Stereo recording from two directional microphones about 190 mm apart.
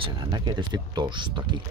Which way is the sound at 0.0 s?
25° right (ahead or behind).